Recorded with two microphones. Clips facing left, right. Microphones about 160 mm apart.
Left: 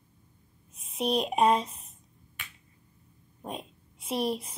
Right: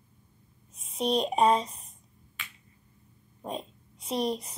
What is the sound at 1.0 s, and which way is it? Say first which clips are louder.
Speech: right 1 dB; 5° left (ahead or behind).